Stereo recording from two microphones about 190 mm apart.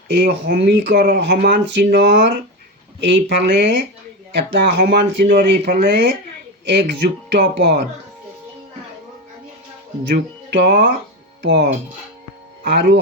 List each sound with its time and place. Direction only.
0.1 s speech: 55° right (ahead or behind)
10.1 s speech: 60° right (ahead or behind)